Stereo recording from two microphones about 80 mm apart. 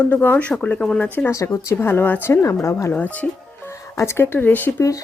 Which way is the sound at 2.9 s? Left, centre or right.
Centre.